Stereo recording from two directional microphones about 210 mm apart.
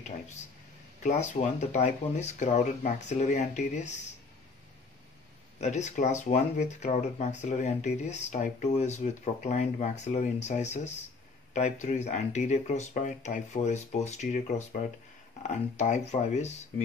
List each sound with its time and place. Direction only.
1.0 s speech: 35° left (ahead or behind)
5.6 s speech: 35° left (ahead or behind)